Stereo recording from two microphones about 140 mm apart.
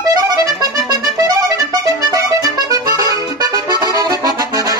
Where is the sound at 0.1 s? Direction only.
25° right (ahead or behind).